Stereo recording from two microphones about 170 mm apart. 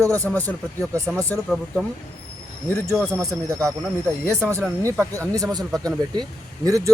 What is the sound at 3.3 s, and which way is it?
A man's voice, 20° right (ahead or behind).